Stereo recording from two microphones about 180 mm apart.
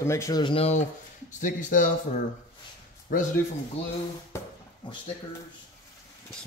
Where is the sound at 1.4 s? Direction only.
45° left (ahead or behind).